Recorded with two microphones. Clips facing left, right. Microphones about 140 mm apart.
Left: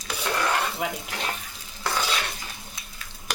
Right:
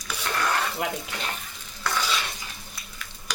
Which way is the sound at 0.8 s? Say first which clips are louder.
Even; centre (ahead or behind).